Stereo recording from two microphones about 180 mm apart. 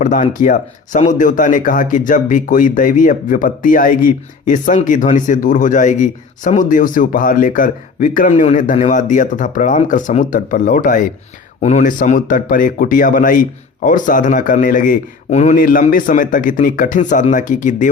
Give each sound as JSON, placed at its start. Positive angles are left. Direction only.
{"t": 0.0, "sound": "speech", "side_deg": 45}